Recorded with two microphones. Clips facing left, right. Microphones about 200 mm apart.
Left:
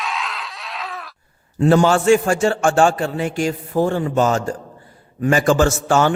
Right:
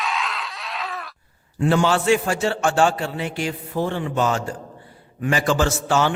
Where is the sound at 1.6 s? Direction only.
40° left (ahead or behind).